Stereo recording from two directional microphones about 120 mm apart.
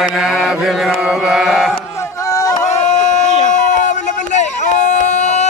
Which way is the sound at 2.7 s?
70° left (ahead or behind).